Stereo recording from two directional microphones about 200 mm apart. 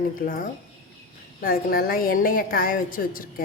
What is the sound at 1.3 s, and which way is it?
A woman's voice, 45° left (ahead or behind).